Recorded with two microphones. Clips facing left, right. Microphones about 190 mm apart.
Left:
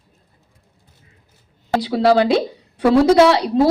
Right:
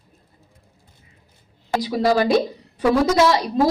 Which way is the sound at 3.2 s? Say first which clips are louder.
Left 4 dB; 65° left (ahead or behind).